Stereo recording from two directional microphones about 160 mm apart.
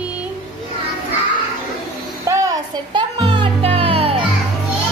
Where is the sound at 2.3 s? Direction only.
25° right (ahead or behind).